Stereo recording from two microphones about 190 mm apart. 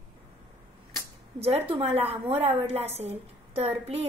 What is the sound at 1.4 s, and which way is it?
A woman's voice, 30° right (ahead or behind).